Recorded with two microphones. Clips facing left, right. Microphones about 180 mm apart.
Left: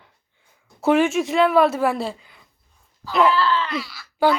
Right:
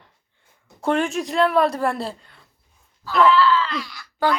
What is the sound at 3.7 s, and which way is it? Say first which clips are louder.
Speech: left 2 dB; 5° left (ahead or behind).